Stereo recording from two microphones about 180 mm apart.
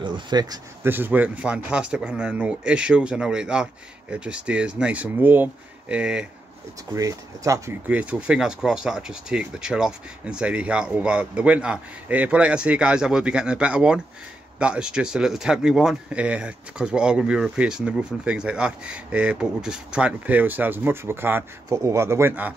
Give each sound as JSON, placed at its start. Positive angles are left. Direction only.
{"t": 0.0, "sound": "speech", "side_deg": -25}
{"t": 0.9, "sound": "speech", "side_deg": -10}
{"t": 6.9, "sound": "speech", "side_deg": -20}